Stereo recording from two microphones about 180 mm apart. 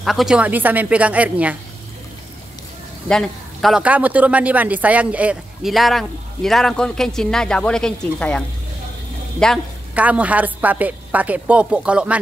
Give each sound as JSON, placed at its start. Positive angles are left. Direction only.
{"t": 0.0, "sound": "a woman's voice", "side_deg": 0}
{"t": 3.1, "sound": "speech", "side_deg": 0}
{"t": 9.9, "sound": "a woman's voice", "side_deg": -10}